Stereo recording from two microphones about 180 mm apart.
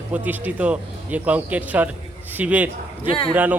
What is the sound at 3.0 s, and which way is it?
Speech, 30° left (ahead or behind).